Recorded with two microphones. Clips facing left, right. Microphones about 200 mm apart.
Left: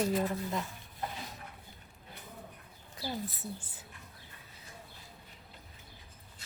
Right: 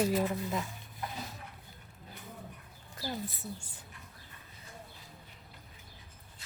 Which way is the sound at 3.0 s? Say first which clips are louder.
Even; centre (ahead or behind).